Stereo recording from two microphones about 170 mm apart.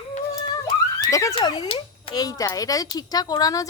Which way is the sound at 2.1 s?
20° left (ahead or behind).